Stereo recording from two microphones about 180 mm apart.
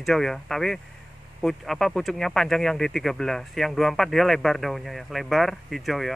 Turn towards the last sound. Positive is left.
turn(degrees=0)  # may be behind; listen again after turning